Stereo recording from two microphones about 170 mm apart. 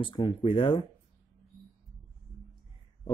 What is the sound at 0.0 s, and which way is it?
Speech, 30° left (ahead or behind).